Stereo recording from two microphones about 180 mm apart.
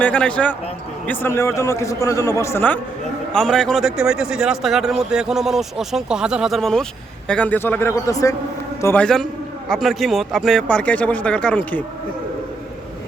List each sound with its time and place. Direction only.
0.0 s a man's voice: 5° left (ahead or behind)